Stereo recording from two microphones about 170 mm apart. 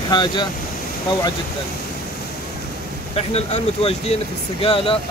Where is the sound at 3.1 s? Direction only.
35° left (ahead or behind).